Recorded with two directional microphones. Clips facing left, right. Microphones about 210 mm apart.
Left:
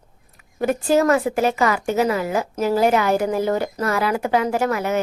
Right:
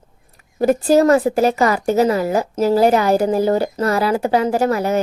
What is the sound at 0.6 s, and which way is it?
A woman's voice, 35° right (ahead or behind).